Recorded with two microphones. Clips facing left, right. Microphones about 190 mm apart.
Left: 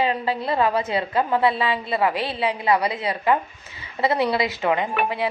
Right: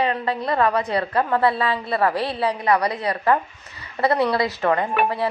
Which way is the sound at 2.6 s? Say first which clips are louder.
Even; 25° left (ahead or behind).